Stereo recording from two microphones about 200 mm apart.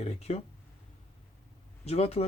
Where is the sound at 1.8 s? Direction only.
30° left (ahead or behind).